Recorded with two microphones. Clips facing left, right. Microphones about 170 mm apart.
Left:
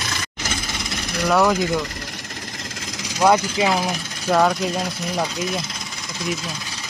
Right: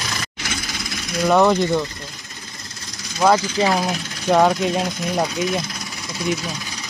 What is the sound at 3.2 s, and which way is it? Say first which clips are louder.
Speech: even; centre (ahead or behind).